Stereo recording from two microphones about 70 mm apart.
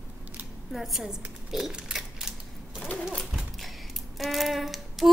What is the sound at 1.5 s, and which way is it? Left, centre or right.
Mechanisms, centre.